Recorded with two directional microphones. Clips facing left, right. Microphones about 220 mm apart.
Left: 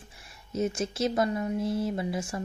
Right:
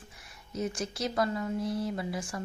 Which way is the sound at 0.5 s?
25° left (ahead or behind).